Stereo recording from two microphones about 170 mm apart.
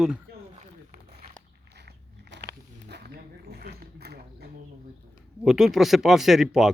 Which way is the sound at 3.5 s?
70° right (ahead or behind).